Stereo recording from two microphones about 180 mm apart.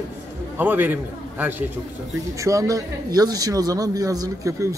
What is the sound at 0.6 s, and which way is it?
Speech, 10° right (ahead or behind).